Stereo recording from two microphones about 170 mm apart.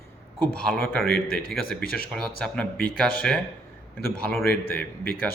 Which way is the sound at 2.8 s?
60° left (ahead or behind).